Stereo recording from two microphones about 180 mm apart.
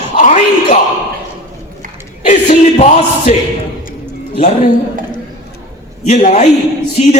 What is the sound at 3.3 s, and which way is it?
A man's voice, 40° left (ahead or behind).